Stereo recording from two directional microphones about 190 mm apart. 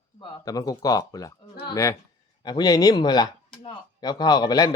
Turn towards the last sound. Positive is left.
turn(degrees=20)  # may be behind; listen again after turning